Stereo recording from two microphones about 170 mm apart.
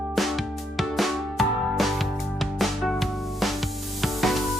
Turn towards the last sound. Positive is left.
turn(degrees=0)  # may be behind; listen again after turning